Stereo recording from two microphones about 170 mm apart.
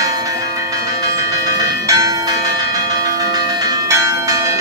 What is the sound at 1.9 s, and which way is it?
Church bell, 20° right (ahead or behind).